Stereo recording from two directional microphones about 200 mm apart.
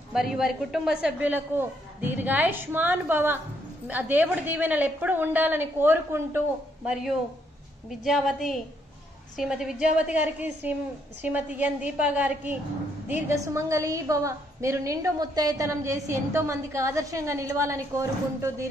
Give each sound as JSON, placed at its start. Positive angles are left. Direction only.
{"t": 0.1, "sound": "a woman's voice", "side_deg": 0}